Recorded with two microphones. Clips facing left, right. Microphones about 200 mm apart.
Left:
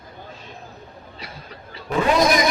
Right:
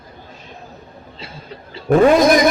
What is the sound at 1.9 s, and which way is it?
Speech, 50° right (ahead or behind).